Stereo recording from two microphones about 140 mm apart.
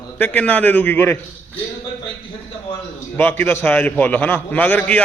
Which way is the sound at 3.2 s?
10° left (ahead or behind).